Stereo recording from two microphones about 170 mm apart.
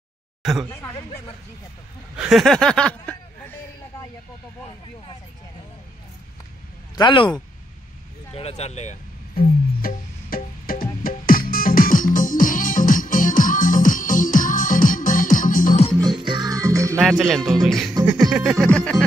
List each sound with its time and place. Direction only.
0.4 s speech: centre (ahead or behind)
0.7 s speech: 15° left (ahead or behind)
2.1 s speech: centre (ahead or behind)
7.0 s speech: 30° left (ahead or behind)
8.3 s speech: 35° left (ahead or behind)
9.8 s music: 60° left (ahead or behind)
16.0 s music: 25° right (ahead or behind)
17.0 s speech: centre (ahead or behind)